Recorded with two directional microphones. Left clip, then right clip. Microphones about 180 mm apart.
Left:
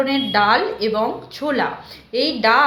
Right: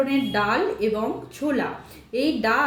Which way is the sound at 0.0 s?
20° right (ahead or behind).